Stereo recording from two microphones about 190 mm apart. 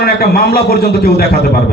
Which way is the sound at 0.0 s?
55° left (ahead or behind).